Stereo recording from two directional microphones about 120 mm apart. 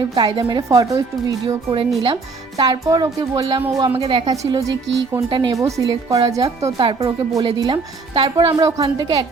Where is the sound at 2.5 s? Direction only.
35° right (ahead or behind).